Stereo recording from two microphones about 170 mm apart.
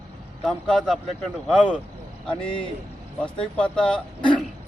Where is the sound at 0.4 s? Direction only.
Centre (ahead or behind).